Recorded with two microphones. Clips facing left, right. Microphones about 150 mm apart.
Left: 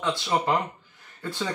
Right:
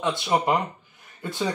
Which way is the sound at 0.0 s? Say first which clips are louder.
Right 2 dB; 15° right (ahead or behind).